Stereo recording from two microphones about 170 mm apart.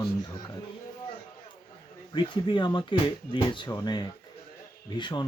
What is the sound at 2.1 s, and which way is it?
Speech, 30° left (ahead or behind).